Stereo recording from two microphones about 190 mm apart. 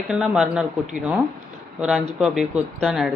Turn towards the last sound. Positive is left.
turn(degrees=0)  # may be behind; listen again after turning